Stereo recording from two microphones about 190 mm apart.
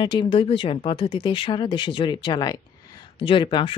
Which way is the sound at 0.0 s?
25° left (ahead or behind).